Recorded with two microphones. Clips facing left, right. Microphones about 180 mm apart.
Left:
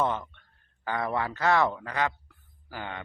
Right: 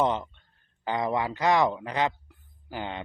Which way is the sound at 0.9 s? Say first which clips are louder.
Right 2 dB; 15° right (ahead or behind).